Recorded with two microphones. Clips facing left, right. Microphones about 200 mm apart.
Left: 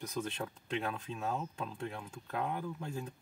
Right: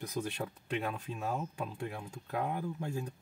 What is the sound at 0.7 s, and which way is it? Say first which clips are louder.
Speech: right 1 dB; 5° right (ahead or behind).